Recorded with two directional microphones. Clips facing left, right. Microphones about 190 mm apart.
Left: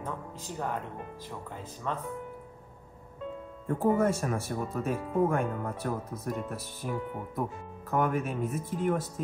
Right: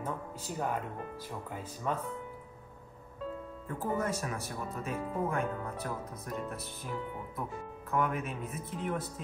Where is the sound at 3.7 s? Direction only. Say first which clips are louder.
Left 8 dB; 55° left (ahead or behind).